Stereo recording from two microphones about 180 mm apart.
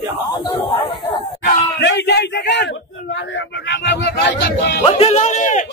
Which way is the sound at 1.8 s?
75° left (ahead or behind).